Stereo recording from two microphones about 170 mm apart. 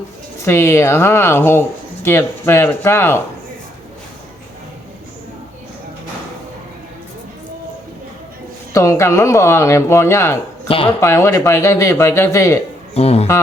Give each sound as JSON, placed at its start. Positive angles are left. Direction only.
{"t": 0.4, "sound": "speech", "side_deg": 15}
{"t": 8.7, "sound": "speech", "side_deg": 15}
{"t": 10.7, "sound": "speech", "side_deg": 35}
{"t": 11.0, "sound": "speech", "side_deg": 15}
{"t": 12.9, "sound": "speech", "side_deg": 35}